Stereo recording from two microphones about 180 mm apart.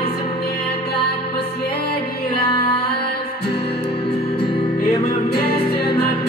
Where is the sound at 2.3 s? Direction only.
30° left (ahead or behind).